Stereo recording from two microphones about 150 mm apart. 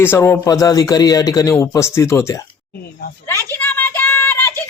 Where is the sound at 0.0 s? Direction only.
15° left (ahead or behind).